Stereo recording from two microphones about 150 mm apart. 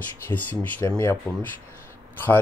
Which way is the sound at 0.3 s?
10° left (ahead or behind).